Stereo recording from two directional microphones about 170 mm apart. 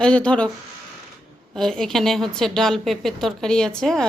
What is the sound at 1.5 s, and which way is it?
A woman's voice, 5° left (ahead or behind).